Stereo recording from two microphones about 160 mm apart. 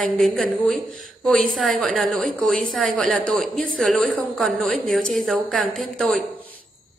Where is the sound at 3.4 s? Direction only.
55° right (ahead or behind).